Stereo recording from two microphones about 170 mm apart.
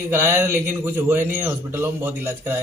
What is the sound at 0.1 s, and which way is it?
Speech, 15° right (ahead or behind).